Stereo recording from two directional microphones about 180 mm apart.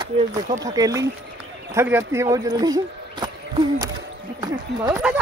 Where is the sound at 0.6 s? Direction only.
20° right (ahead or behind).